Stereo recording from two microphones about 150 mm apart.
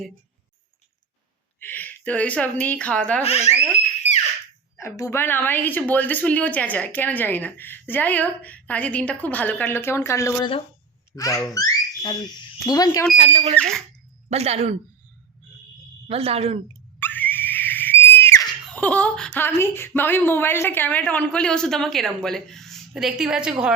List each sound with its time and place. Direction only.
1.6 s a woman's voice: 10° left (ahead or behind)
3.2 s speech: 45° left (ahead or behind)
4.8 s a woman's voice: 20° left (ahead or behind)
13.1 s speech: 35° right (ahead or behind)
13.6 s a sound: 5° left (ahead or behind)
14.3 s speech: 45° right (ahead or behind)
16.0 s speech: 40° right (ahead or behind)
17.0 s screaming: 10° left (ahead or behind); by 23.7 s 5° right (ahead or behind)